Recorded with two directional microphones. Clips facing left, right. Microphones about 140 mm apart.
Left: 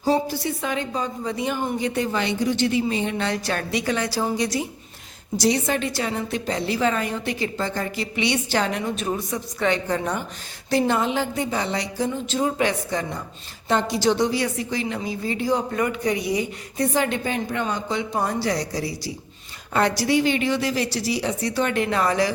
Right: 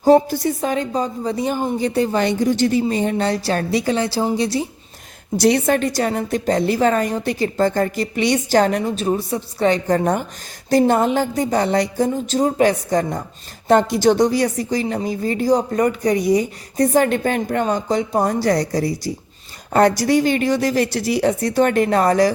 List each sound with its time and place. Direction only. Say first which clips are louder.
0.0 s a woman's voice: right 8 dB; 50° right (ahead or behind); by 2.2 s 35° right (ahead or behind)
2.2 s a woman's voice: right 5 dB; 45° right (ahead or behind); by 4.6 s 30° right (ahead or behind)
5.4 s speech: right 6 dB; 60° right (ahead or behind); by 22.3 s 45° right (ahead or behind)